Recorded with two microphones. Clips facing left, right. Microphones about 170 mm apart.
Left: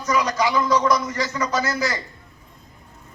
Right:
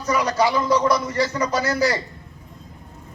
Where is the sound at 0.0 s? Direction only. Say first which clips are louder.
Right 1 dB; 30° right (ahead or behind).